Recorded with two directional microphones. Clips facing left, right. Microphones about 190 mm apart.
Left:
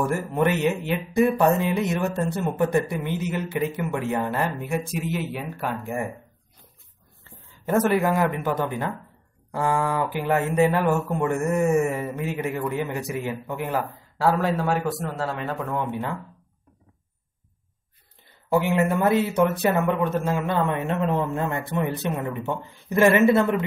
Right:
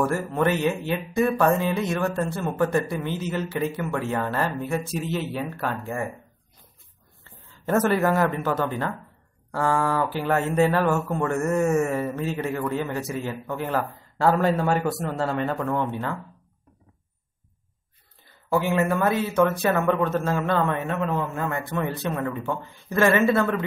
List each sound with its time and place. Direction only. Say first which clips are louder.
0.0 s speech: even; 20° left (ahead or behind)
7.6 s speech: even; 10° left (ahead or behind)
18.5 s speech: left 1 dB; 20° left (ahead or behind)
20.8 s speech: left 2 dB; 25° left (ahead or behind)